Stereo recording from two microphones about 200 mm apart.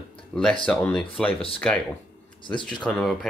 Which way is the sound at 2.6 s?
5° left (ahead or behind).